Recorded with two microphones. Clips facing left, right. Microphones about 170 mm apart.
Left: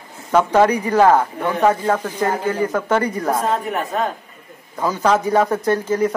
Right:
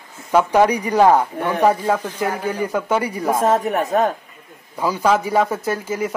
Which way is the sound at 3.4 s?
45° right (ahead or behind).